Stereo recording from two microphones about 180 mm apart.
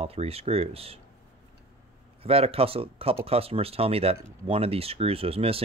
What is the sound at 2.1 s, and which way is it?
Speech, 30° right (ahead or behind).